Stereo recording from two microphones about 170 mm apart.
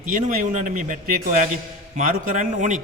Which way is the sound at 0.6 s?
50° right (ahead or behind).